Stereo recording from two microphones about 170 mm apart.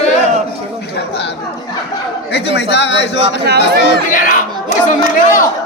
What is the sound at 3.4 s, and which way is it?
Speech, 75° right (ahead or behind).